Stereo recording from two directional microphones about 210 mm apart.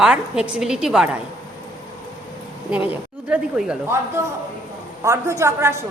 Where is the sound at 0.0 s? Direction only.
5° right (ahead or behind).